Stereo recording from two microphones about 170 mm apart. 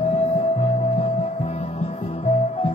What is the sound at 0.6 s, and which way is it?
Music, 35° left (ahead or behind).